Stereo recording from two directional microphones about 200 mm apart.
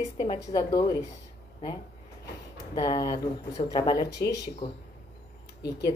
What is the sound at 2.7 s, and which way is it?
A woman's voice, 20° left (ahead or behind).